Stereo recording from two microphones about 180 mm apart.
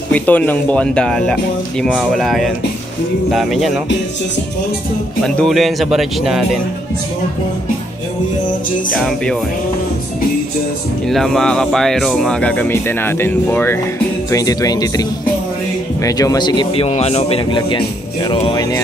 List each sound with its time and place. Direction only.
0.1 s speech: 10° left (ahead or behind)
5.2 s speech: 5° left (ahead or behind)
9.0 s speech: 5° left (ahead or behind)
11.1 s speech: centre (ahead or behind); by 18.8 s 20° left (ahead or behind)